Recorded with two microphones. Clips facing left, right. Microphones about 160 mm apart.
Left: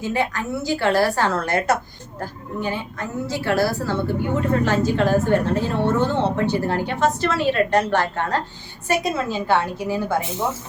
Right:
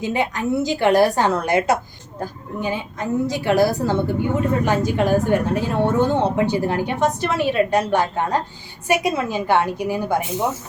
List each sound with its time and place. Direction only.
0.0 s a woman's voice: 15° right (ahead or behind)